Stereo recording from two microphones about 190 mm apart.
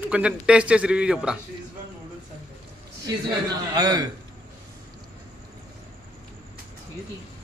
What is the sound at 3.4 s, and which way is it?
Speech, 20° right (ahead or behind).